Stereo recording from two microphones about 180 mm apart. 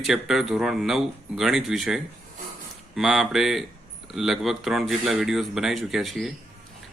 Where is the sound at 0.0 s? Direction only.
Centre (ahead or behind).